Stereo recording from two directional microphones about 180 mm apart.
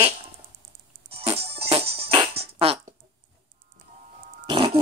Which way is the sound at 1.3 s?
35° right (ahead or behind).